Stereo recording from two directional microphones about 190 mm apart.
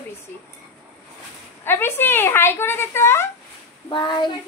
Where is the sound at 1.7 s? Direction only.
10° left (ahead or behind).